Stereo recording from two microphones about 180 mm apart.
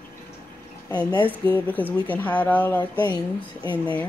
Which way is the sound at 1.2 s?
10° left (ahead or behind).